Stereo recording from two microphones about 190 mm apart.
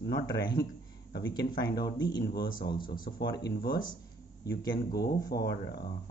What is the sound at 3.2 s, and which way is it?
Speech, 25° left (ahead or behind).